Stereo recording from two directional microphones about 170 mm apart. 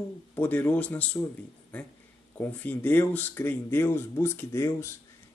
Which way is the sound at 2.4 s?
10° left (ahead or behind).